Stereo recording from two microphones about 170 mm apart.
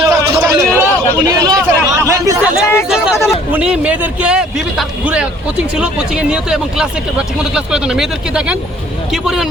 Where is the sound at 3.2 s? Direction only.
5° right (ahead or behind).